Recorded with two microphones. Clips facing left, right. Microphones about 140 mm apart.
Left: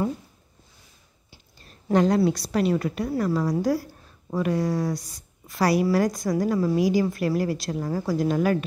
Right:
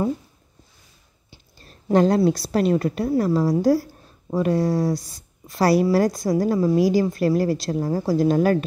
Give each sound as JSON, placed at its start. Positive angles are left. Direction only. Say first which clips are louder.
{"t": 1.7, "sound": "a woman's voice", "louder": "right 3 dB", "side_deg": -35}